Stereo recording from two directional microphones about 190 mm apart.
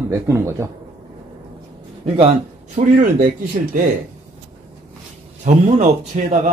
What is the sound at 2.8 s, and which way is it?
Speech, 40° right (ahead or behind).